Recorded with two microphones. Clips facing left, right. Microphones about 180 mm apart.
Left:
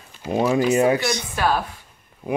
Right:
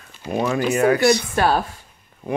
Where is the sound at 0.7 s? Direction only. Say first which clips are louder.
Right 2 dB; 25° left (ahead or behind).